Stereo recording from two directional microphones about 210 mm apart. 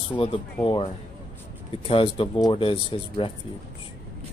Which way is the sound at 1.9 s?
25° left (ahead or behind).